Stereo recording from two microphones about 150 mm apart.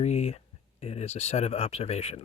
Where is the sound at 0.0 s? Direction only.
45° left (ahead or behind).